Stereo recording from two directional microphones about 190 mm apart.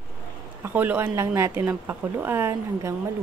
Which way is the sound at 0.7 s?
10° right (ahead or behind).